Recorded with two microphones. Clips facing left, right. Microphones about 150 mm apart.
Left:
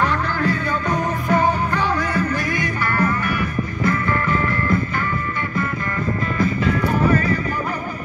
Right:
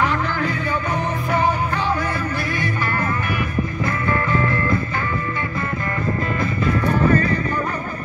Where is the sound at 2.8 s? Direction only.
20° right (ahead or behind).